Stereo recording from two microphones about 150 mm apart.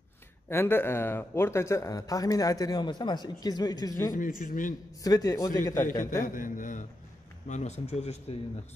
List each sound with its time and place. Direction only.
0.5 s speech: 15° left (ahead or behind)
4.5 s a man's voice: 65° left (ahead or behind)
5.0 s speech: 25° left (ahead or behind)
6.2 s a man's voice: 65° left (ahead or behind); by 8.4 s 45° left (ahead or behind)